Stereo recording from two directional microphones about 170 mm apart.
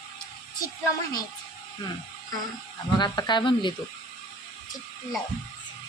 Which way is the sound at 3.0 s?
25° left (ahead or behind).